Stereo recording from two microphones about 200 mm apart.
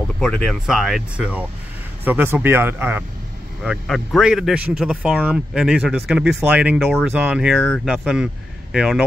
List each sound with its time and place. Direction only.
0.2 s speech: 5° left (ahead or behind)